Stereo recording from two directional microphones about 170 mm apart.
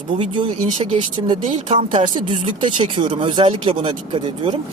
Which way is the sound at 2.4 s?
30° right (ahead or behind).